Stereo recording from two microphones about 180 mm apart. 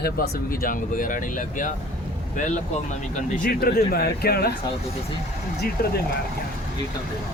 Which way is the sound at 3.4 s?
60° left (ahead or behind).